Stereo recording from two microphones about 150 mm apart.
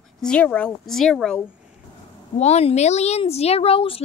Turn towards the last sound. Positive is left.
turn(degrees=40)  # may be behind; listen again after turning